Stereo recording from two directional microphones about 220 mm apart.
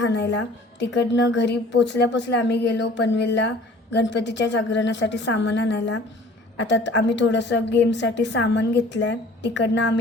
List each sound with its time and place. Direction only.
0.0 s a woman's voice: 50° left (ahead or behind)